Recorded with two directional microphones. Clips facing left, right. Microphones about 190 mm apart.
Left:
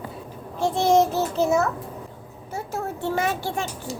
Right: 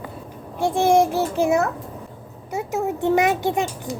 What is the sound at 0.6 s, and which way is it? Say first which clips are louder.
A child's voice: right 2 dB; 10° right (ahead or behind).